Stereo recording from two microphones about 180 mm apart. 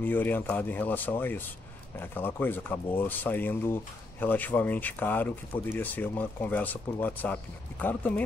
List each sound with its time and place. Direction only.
0.0 s speech: 10° left (ahead or behind)